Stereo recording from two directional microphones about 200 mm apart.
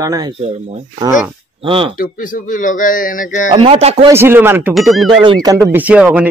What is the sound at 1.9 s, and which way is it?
Speech, 40° left (ahead or behind).